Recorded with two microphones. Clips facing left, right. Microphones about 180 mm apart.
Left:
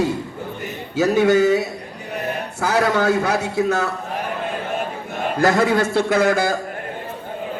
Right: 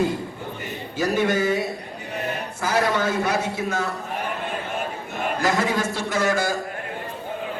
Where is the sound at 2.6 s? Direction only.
70° left (ahead or behind).